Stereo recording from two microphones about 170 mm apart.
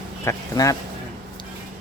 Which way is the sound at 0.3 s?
20° left (ahead or behind).